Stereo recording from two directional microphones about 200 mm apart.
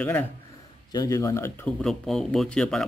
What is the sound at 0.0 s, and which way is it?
Speech, 10° left (ahead or behind).